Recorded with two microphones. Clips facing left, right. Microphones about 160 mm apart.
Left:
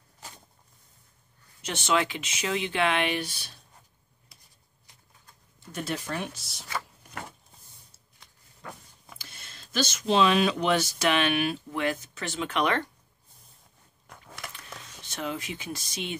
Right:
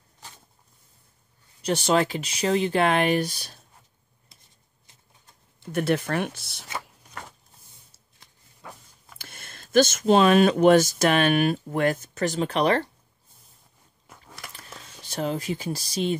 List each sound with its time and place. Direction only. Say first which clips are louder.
1.6 s speech: right 5 dB; 35° right (ahead or behind)
4.3 s shuffling cards: right 1 dB; 25° right (ahead or behind)
5.7 s speech: right 9 dB; 60° right (ahead or behind)
9.2 s speech: right 4 dB; 55° right (ahead or behind); by 12.8 s 35° right (ahead or behind)
14.5 s a sound: even; 35° right (ahead or behind)